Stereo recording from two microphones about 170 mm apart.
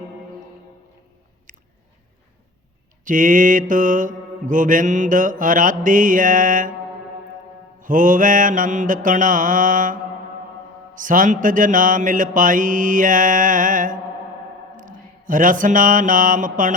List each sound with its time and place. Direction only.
1.5 s chewing: 50° right (ahead or behind)
3.0 s mantra: 50° right (ahead or behind)
7.8 s mantra: 50° right (ahead or behind)